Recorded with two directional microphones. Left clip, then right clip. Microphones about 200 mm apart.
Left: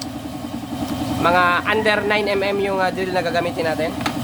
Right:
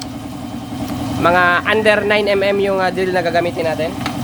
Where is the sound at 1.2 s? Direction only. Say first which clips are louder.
Right 3 dB; 20° right (ahead or behind).